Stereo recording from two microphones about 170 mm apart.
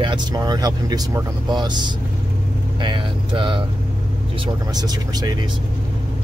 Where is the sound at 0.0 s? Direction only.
25° right (ahead or behind).